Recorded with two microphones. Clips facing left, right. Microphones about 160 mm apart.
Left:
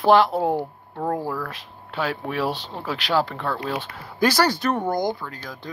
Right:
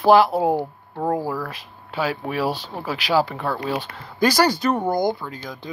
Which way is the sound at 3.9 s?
5° left (ahead or behind).